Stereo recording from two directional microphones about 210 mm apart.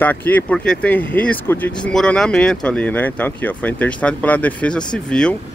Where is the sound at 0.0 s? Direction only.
10° left (ahead or behind).